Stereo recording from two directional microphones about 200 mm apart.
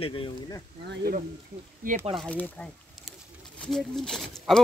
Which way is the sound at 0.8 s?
55° right (ahead or behind).